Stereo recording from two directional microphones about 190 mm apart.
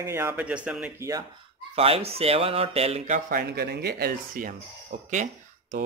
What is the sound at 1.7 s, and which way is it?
Speech, 30° right (ahead or behind).